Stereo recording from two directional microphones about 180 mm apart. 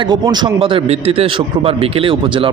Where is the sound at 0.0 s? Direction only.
25° right (ahead or behind).